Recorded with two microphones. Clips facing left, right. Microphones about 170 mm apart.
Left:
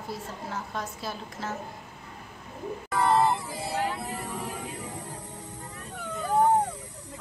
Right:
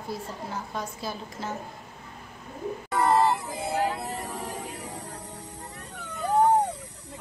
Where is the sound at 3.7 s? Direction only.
40° right (ahead or behind).